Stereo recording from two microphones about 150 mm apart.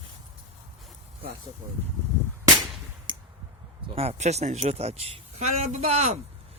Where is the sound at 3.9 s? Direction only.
40° right (ahead or behind).